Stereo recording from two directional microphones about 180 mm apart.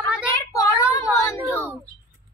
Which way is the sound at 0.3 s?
15° left (ahead or behind).